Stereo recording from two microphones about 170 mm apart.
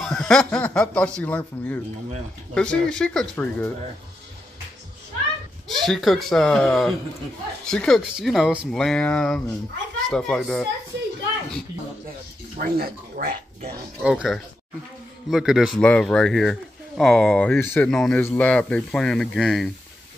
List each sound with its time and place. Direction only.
0.0 s speech: centre (ahead or behind)
5.8 s speech: centre (ahead or behind)
12.5 s speech: 60° right (ahead or behind)
14.0 s speech: 5° right (ahead or behind)